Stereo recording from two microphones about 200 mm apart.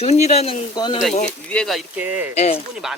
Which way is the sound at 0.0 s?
30° left (ahead or behind).